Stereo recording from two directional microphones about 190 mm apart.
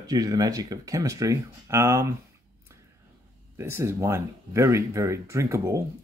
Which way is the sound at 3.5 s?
15° right (ahead or behind).